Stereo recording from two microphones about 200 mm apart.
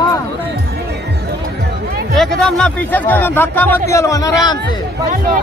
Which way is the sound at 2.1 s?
Centre (ahead or behind).